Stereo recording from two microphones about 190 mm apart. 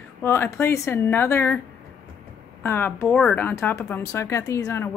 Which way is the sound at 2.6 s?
10° left (ahead or behind).